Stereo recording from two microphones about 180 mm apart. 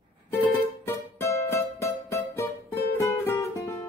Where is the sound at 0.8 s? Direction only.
15° left (ahead or behind).